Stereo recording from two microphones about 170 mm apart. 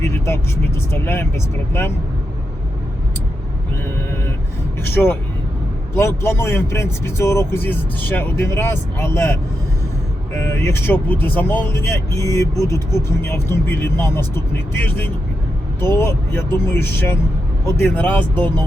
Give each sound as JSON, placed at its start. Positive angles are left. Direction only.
{"t": 0.0, "sound": "speech", "side_deg": 15}
{"t": 4.8, "sound": "speech", "side_deg": 10}